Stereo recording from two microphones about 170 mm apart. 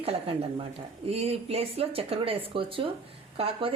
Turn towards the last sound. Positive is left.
turn(degrees=-35)  # may be behind; listen again after turning